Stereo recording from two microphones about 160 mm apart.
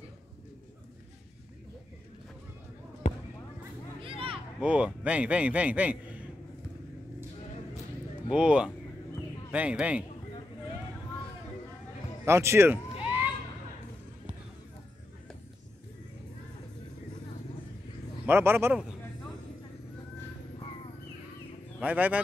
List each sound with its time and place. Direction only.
4.0 s a sound: 35° right (ahead or behind)
4.6 s a man's voice: 5° right (ahead or behind)
8.3 s a man's voice: 5° right (ahead or behind)
12.3 s a man's voice: 15° right (ahead or behind)
13.0 s a sound: 10° right (ahead or behind)
18.2 s speech: 15° right (ahead or behind)
21.7 s speech: 10° right (ahead or behind)